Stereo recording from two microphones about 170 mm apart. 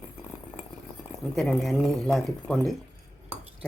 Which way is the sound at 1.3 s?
Centre (ahead or behind).